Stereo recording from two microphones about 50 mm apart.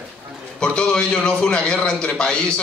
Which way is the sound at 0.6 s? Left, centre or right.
Centre.